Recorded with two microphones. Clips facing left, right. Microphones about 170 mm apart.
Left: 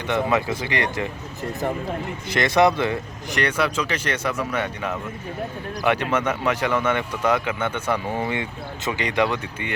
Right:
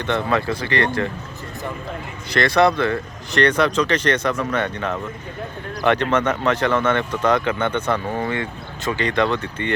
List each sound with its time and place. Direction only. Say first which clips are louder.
0.0 s speech: right 1 dB; 15° left (ahead or behind)
2.3 s speech: right 1 dB; 20° left (ahead or behind)